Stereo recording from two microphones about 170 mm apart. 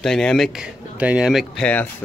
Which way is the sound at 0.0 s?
5° left (ahead or behind).